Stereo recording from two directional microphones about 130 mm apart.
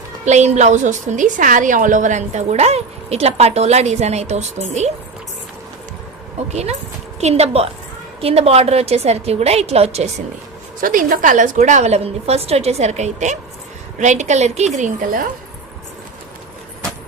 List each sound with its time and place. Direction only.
0.3 s a woman's voice: 60° right (ahead or behind)
6.5 s a woman's voice: 55° right (ahead or behind)
10.8 s a woman's voice: 90° right